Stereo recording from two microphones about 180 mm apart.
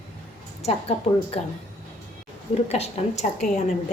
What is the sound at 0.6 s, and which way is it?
Speech, 35° left (ahead or behind).